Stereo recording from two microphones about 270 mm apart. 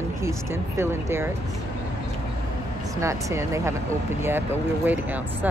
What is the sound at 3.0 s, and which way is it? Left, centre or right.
Speech, centre.